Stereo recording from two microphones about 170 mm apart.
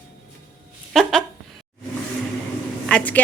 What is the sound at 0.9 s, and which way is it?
Speech, centre (ahead or behind).